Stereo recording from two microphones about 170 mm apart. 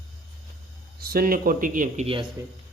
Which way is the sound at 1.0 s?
60° right (ahead or behind).